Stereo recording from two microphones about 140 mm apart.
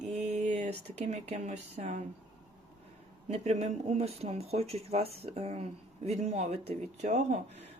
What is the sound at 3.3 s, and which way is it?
Speech, 50° right (ahead or behind).